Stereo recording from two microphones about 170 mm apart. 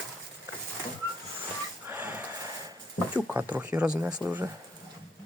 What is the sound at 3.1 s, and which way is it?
Speech, 10° right (ahead or behind).